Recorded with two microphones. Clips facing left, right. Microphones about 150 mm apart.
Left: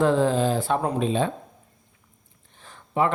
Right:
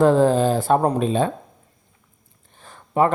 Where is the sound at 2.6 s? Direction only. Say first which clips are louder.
Right 4 dB; 45° right (ahead or behind).